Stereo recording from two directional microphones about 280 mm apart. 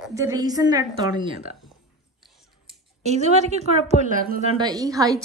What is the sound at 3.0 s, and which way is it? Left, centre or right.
A woman's voice, right.